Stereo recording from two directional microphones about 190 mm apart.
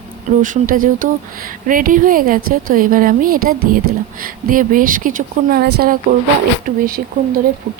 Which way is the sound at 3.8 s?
90° right.